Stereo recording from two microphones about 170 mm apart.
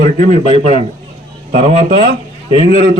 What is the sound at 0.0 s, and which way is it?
Speech, 50° right (ahead or behind).